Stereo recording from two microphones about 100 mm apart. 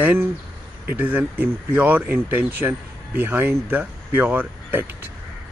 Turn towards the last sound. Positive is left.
turn(degrees=-20)  # may be behind; listen again after turning